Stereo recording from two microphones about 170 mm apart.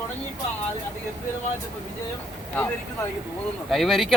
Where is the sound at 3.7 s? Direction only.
Centre (ahead or behind).